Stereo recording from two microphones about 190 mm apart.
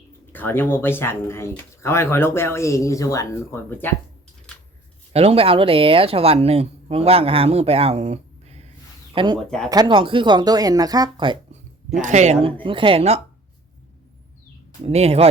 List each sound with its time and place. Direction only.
0.3 s speech: 10° left (ahead or behind)
4.5 s scissors: 5° left (ahead or behind)
5.1 s speech: 30° right (ahead or behind)
9.1 s speech: 25° right (ahead or behind)
9.4 s speech: 5° left (ahead or behind)
9.6 s speech: 20° right (ahead or behind)
12.0 s speech: 35° right (ahead or behind)
14.8 s speech: 35° right (ahead or behind)